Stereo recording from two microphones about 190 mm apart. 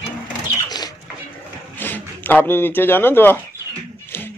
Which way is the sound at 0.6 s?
20° left (ahead or behind).